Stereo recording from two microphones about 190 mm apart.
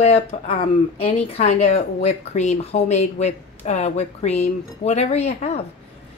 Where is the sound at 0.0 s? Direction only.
35° left (ahead or behind).